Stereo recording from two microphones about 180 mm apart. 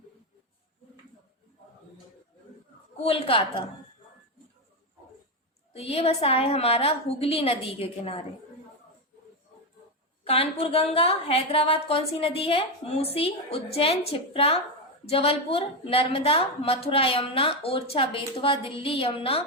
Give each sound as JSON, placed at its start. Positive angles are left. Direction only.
{"t": 3.0, "sound": "a woman's voice", "side_deg": 35}
{"t": 5.7, "sound": "a woman's voice", "side_deg": 35}
{"t": 10.2, "sound": "a woman's voice", "side_deg": 30}